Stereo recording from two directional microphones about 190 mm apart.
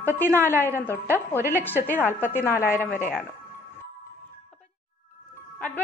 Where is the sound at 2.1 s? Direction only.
10° left (ahead or behind).